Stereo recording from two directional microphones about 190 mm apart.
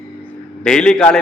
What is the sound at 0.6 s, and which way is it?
Speech, 5° left (ahead or behind).